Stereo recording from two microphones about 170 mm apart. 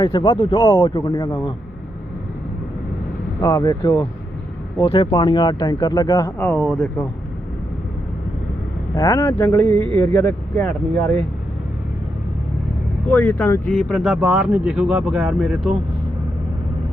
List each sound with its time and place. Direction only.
0.0 s speech: 30° left (ahead or behind)
3.4 s speech: 20° left (ahead or behind)
5.1 s speech: 25° left (ahead or behind)
6.5 s speech: 10° left (ahead or behind)
9.0 s speech: 20° left (ahead or behind)
10.6 s speech: 20° left (ahead or behind)
13.1 s speech: 10° left (ahead or behind)